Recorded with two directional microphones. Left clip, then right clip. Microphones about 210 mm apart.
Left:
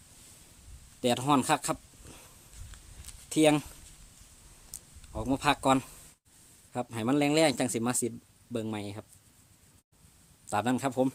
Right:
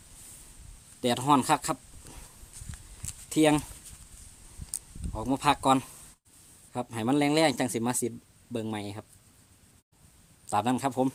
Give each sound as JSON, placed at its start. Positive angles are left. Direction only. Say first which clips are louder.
{"t": 1.0, "sound": "speech", "louder": "right 2 dB", "side_deg": 0}
{"t": 3.2, "sound": "speech", "louder": "even", "side_deg": 0}
{"t": 5.1, "sound": "speech", "louder": "right 2 dB", "side_deg": 0}
{"t": 10.4, "sound": "speech", "louder": "right 2 dB", "side_deg": 0}